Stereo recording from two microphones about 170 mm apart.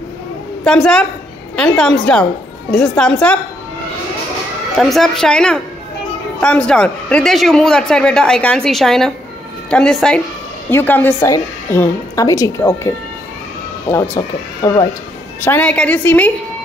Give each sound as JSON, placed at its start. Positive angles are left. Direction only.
{"t": 0.7, "sound": "speech", "side_deg": 5}
{"t": 4.7, "sound": "a woman's voice", "side_deg": 0}
{"t": 15.4, "sound": "speech", "side_deg": 10}